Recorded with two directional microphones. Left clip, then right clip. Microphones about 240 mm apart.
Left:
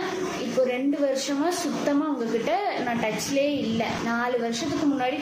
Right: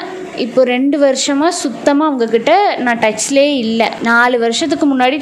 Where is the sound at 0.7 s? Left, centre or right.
Right.